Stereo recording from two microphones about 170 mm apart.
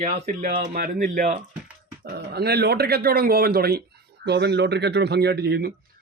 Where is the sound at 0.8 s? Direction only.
55° right (ahead or behind).